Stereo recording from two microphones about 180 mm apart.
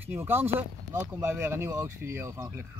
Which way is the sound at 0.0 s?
10° right (ahead or behind).